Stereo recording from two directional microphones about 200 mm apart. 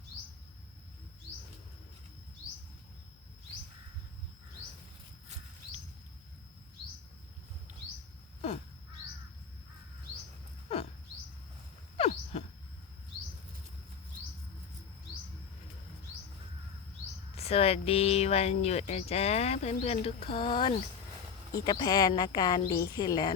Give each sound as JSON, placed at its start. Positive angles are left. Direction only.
{"t": 10.7, "sound": "bird vocalization", "side_deg": 30}
{"t": 11.9, "sound": "wild animals", "side_deg": 30}
{"t": 17.3, "sound": "speech", "side_deg": 30}